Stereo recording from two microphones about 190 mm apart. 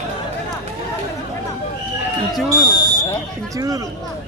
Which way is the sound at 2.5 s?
20° right (ahead or behind).